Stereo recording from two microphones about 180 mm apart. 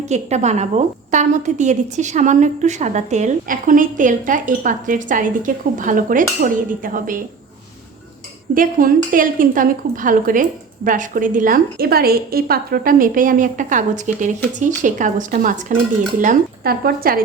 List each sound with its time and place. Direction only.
0.0 s a woman's voice: 40° right (ahead or behind)
8.5 s a woman's voice: 50° right (ahead or behind)